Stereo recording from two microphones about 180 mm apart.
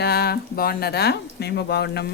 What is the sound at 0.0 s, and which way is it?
Speech, 60° left (ahead or behind).